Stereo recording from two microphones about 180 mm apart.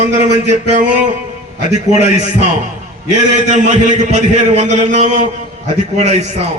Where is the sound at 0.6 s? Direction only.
45° right (ahead or behind).